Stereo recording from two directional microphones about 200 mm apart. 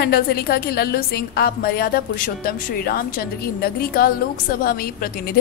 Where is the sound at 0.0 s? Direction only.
50° left (ahead or behind).